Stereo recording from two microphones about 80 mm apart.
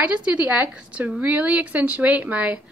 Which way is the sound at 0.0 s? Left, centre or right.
Centre.